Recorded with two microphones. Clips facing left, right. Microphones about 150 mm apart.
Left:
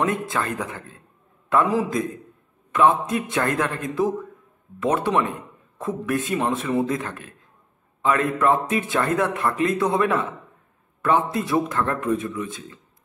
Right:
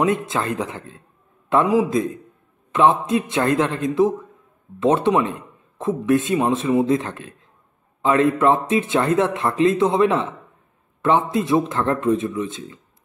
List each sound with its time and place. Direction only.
0.0 s speech: 20° right (ahead or behind)